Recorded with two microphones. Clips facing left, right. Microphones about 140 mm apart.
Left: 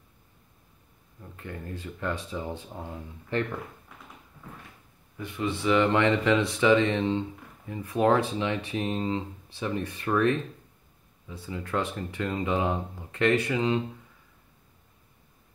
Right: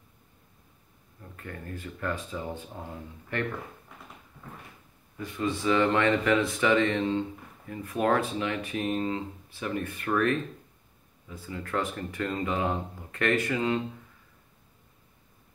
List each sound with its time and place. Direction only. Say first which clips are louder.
1.2 s speech: left 2 dB; 20° left (ahead or behind)
5.6 s speech: left 2 dB; 15° left (ahead or behind)